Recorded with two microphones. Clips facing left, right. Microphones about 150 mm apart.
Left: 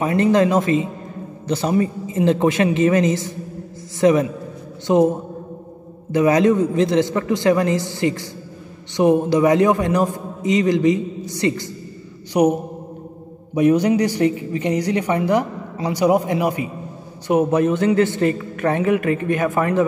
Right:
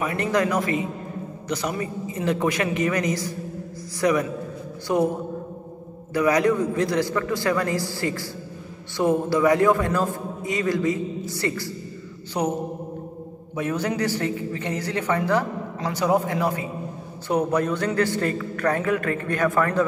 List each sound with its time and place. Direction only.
0.0 s a man's voice: 25° left (ahead or behind)
6.1 s a man's voice: 20° left (ahead or behind)
13.6 s a woman's voice: 15° left (ahead or behind)